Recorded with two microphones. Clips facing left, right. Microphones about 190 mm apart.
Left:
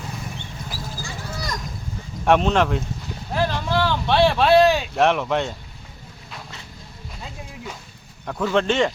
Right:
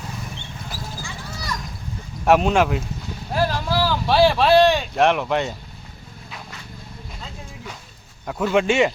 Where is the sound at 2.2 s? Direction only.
5° right (ahead or behind).